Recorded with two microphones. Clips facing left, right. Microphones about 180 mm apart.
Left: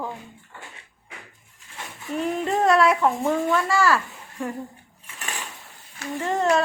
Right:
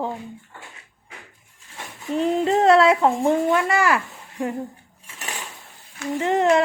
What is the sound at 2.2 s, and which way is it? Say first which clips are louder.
A child's voice: right 4 dB; 30° right (ahead or behind).